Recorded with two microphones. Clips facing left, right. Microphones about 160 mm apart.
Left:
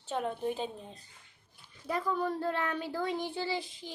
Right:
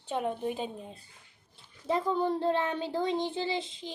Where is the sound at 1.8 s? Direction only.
25° right (ahead or behind).